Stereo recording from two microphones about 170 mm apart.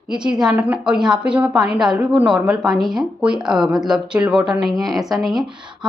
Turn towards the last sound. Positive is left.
turn(degrees=0)  # may be behind; listen again after turning